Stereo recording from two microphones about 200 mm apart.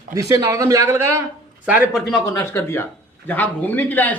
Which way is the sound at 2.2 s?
15° left (ahead or behind).